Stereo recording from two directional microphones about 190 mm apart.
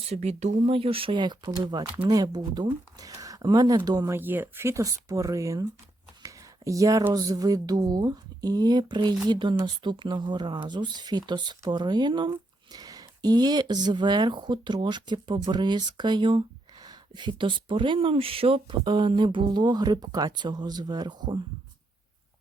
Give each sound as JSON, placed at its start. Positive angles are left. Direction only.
{"t": 0.0, "sound": "speech", "side_deg": -35}